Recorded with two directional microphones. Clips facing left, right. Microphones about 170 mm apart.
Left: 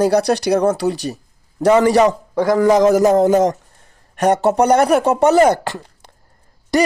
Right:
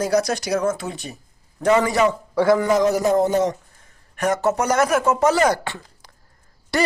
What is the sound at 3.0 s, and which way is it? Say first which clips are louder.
Speech: left 5 dB; 90° left.